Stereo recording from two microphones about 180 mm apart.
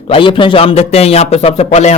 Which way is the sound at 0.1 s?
30° left (ahead or behind).